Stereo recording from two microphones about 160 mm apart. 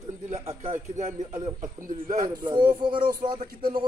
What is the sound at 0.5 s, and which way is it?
Speech, 45° right (ahead or behind).